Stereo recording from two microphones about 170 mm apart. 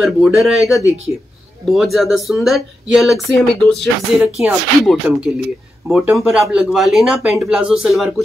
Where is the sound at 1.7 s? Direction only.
Centre (ahead or behind).